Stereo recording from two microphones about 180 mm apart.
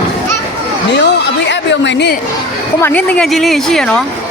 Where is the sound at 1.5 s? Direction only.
80° left.